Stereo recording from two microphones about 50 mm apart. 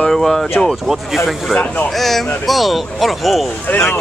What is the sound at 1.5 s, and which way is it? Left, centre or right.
Speech, left.